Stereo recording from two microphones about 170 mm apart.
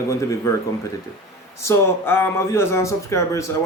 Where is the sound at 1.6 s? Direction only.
15° left (ahead or behind).